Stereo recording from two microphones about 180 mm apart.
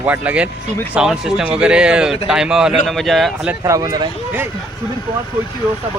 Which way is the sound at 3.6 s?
20° right (ahead or behind).